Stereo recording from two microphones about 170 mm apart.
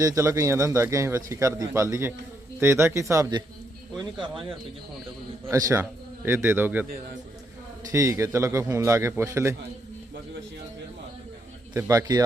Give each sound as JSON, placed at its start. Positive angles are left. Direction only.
{"t": 0.0, "sound": "speech", "side_deg": -20}
{"t": 5.5, "sound": "speech", "side_deg": -20}
{"t": 7.9, "sound": "speech", "side_deg": -20}
{"t": 11.8, "sound": "speech", "side_deg": -20}